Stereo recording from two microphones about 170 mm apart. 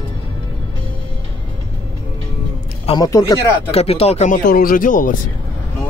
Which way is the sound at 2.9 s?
20° left (ahead or behind).